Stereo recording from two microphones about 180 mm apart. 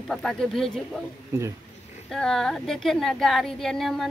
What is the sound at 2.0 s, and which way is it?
A woman's voice, centre (ahead or behind).